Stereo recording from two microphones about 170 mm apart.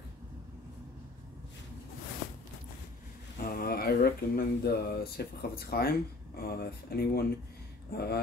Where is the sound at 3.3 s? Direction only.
60° left (ahead or behind).